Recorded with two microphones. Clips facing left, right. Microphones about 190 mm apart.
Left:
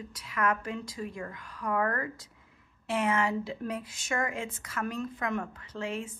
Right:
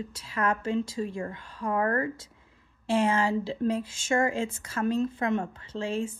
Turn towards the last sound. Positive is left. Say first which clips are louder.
# right 5 dB
turn(degrees=-30)  # may be behind; listen again after turning